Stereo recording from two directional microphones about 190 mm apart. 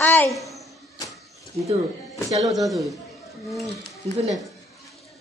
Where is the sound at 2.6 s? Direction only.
Centre (ahead or behind).